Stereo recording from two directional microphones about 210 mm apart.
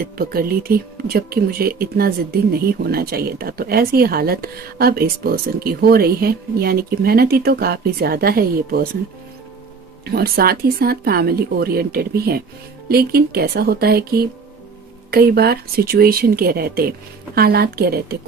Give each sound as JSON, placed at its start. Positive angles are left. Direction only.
{"t": 0.0, "sound": "speech", "side_deg": -45}
{"t": 10.1, "sound": "speech", "side_deg": -45}